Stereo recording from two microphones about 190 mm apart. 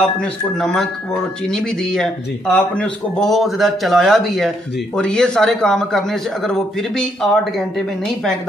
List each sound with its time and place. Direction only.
0.2 s speech: 5° left (ahead or behind)